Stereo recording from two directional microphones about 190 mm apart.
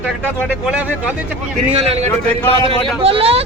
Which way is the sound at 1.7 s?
35° right (ahead or behind).